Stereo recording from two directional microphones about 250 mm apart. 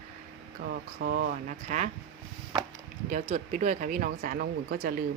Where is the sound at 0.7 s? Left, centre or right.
Right.